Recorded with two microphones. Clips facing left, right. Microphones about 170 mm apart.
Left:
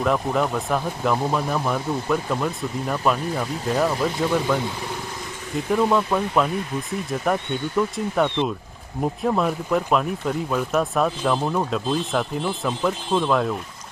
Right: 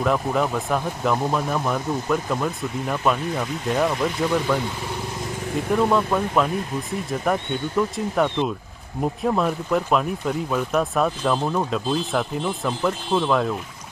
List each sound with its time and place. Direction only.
0.0 s speech: centre (ahead or behind)
5.7 s speech: centre (ahead or behind)